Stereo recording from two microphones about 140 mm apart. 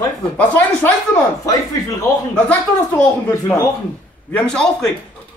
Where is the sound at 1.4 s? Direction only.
25° left (ahead or behind).